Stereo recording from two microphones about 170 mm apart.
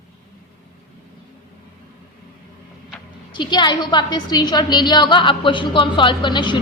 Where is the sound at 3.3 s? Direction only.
25° left (ahead or behind).